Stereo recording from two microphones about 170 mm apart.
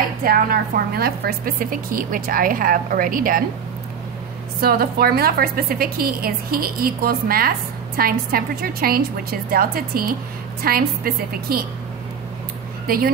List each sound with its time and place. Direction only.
0.2 s a woman's voice: 60° right (ahead or behind)
4.6 s a woman's voice: 65° right (ahead or behind)
12.8 s speech: 60° right (ahead or behind)